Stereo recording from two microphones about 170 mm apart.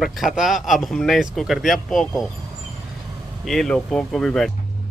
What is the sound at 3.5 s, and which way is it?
Speech, 5° left (ahead or behind).